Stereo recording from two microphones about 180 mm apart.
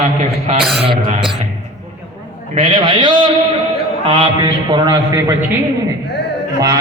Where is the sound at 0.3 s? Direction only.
35° right (ahead or behind).